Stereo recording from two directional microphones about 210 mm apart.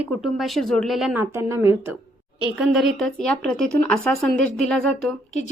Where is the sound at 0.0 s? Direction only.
5° right (ahead or behind).